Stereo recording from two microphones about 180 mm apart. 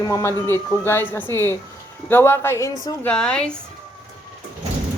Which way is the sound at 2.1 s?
10° left (ahead or behind).